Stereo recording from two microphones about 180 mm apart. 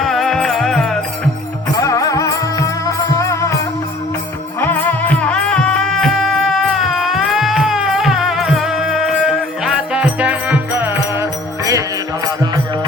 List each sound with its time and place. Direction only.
0.0 s music: centre (ahead or behind)
1.8 s music: 20° left (ahead or behind)
4.6 s music: 10° left (ahead or behind); by 12.5 s 20° right (ahead or behind)